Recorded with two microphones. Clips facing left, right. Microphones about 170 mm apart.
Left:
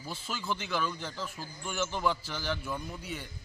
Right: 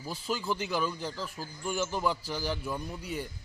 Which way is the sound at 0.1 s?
35° right (ahead or behind).